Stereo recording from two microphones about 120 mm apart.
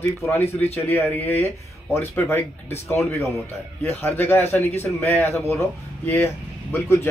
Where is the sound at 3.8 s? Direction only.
20° left (ahead or behind).